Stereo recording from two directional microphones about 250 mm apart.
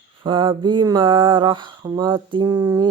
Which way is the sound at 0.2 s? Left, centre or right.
Centre.